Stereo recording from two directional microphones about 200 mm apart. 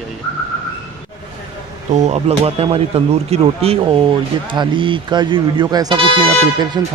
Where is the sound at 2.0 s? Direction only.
35° right (ahead or behind).